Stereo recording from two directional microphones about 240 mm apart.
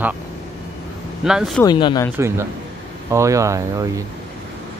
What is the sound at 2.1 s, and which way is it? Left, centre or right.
Speech, centre.